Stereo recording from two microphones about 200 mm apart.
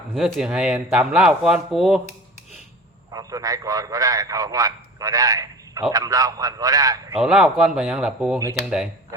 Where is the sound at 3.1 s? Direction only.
20° right (ahead or behind).